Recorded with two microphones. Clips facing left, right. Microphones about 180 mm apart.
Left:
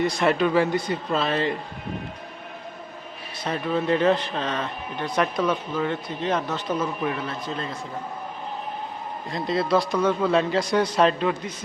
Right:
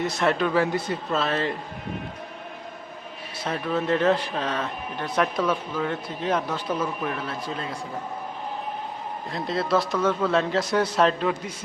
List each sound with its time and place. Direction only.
0.0 s speech: centre (ahead or behind)
3.5 s speech: 5° left (ahead or behind)
6.7 s a man's voice: 5° left (ahead or behind)
7.2 s speech: 5° right (ahead or behind)
9.3 s speech: centre (ahead or behind)